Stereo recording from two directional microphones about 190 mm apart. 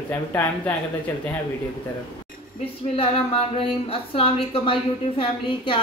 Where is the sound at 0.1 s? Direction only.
10° left (ahead or behind).